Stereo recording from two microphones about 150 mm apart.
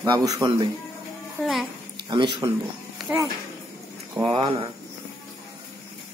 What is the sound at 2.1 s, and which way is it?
Speech, 25° right (ahead or behind).